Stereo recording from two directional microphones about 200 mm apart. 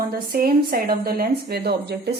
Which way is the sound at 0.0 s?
45° right (ahead or behind).